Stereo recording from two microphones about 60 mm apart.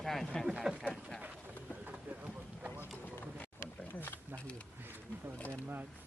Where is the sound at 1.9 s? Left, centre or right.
Right.